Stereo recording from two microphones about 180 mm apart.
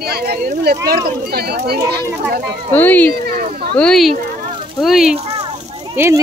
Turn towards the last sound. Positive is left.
turn(degrees=-15)  # may be behind; listen again after turning